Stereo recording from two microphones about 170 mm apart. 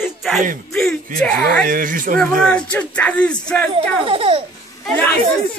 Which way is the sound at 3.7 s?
35° right (ahead or behind).